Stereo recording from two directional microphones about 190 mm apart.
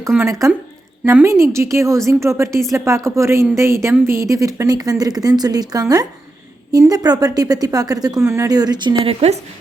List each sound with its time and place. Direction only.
0.2 s a woman's voice: 15° right (ahead or behind); by 9.4 s 30° right (ahead or behind)